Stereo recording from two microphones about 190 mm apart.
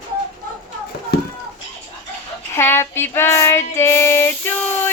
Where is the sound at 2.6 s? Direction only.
15° left (ahead or behind).